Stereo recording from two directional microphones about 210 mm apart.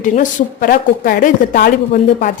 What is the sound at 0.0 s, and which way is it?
A woman's voice, 40° left (ahead or behind).